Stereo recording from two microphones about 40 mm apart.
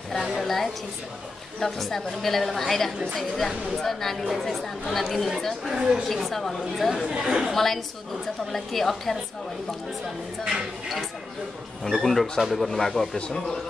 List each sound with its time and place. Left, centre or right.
0.4 s a sound: centre
1.6 s speech: centre
5.8 s a woman's voice: centre
6.0 s speech: centre
7.1 s speech: centre
7.5 s speech: centre
12.0 s speech: centre